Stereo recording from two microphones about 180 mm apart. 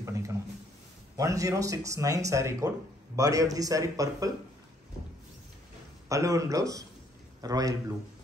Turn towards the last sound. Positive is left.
turn(degrees=-20)  # may be behind; listen again after turning